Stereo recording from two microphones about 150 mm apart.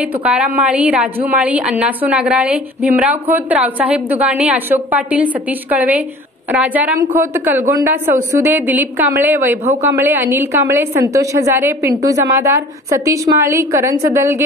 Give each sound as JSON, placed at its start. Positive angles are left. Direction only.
{"t": 0.2, "sound": "a woman's voice", "side_deg": -5}